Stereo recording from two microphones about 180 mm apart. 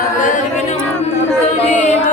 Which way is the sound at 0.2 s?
45° left (ahead or behind).